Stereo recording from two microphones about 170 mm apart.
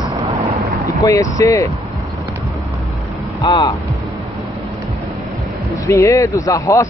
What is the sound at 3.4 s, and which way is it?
Speech, 20° left (ahead or behind).